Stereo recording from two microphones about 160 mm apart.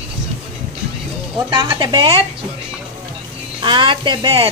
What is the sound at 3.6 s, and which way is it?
Speech, 30° right (ahead or behind).